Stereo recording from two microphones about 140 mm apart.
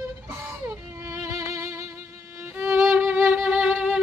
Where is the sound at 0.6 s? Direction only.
20° right (ahead or behind).